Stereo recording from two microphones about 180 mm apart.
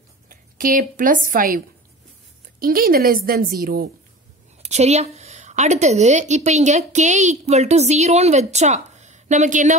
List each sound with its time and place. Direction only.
0.3 s speech: 50° right (ahead or behind)
2.6 s a woman's voice: 55° right (ahead or behind)
4.6 s a woman's voice: 40° right (ahead or behind)